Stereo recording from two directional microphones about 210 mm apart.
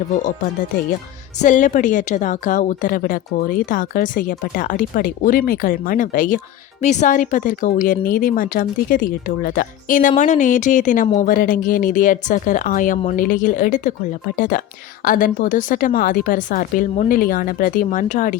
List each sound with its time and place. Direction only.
1.4 s a woman's voice: 35° left (ahead or behind)